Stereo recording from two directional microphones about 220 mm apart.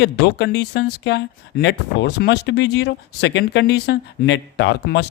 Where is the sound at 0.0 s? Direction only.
50° left (ahead or behind).